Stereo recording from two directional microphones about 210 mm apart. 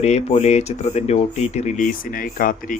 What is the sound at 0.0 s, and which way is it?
Speech, 30° left (ahead or behind).